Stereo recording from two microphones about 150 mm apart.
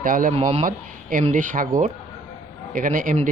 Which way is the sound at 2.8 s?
65° right (ahead or behind).